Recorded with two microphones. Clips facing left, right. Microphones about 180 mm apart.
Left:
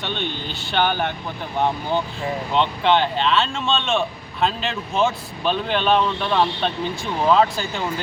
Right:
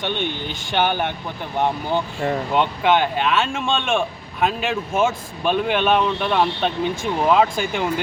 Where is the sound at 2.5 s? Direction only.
10° right (ahead or behind).